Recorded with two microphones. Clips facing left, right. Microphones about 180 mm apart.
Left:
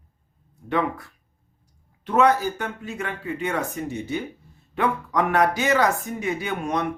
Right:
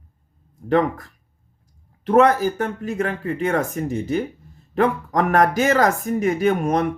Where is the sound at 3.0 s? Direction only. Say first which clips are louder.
Right 6 dB; 40° right (ahead or behind).